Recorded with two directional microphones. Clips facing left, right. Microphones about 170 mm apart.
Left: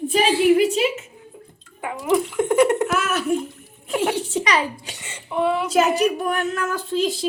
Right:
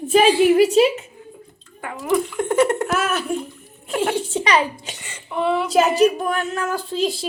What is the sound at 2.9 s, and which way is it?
Speech, 30° right (ahead or behind).